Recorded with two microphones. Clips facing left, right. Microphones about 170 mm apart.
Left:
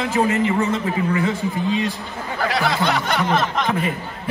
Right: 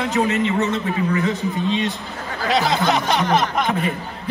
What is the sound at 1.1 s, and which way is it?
Speech, 25° left (ahead or behind).